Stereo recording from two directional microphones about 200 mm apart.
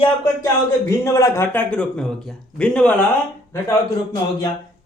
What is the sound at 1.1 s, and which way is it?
A man's voice, 15° left (ahead or behind).